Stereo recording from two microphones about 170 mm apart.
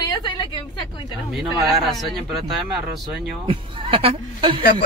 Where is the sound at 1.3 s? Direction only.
Centre (ahead or behind).